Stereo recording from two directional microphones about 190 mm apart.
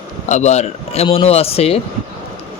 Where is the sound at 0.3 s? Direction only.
35° left (ahead or behind).